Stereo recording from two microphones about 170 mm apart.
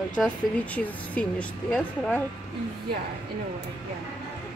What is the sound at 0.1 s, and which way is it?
Speech, 5° left (ahead or behind).